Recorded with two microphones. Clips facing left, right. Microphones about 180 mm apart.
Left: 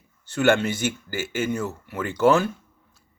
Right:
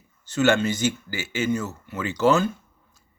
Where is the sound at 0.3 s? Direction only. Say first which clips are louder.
Even; 60° left (ahead or behind).